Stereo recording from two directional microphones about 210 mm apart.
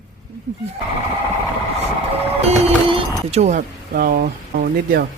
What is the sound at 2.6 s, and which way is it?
Speech, 25° right (ahead or behind).